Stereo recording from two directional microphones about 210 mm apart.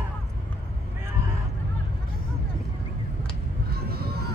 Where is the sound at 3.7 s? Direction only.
45° right (ahead or behind).